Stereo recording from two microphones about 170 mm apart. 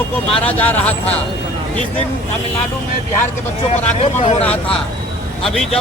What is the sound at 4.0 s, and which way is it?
Speech, 40° left (ahead or behind).